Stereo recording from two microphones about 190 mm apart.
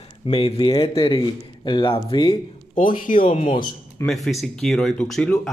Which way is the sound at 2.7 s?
45° left (ahead or behind).